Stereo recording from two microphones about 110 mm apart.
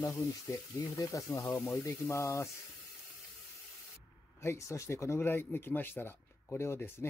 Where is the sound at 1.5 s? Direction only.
Centre (ahead or behind).